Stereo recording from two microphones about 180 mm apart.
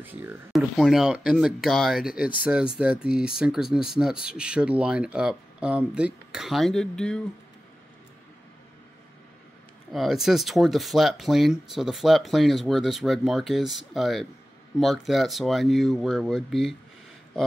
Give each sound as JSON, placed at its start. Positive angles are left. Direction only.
{"t": 0.0, "sound": "speech", "side_deg": -10}
{"t": 9.9, "sound": "speech", "side_deg": 0}